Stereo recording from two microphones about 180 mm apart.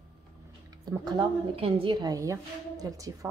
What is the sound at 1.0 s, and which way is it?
A woman's voice, 25° right (ahead or behind).